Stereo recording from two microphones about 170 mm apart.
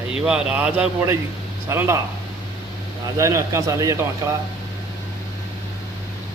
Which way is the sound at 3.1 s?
15° right (ahead or behind).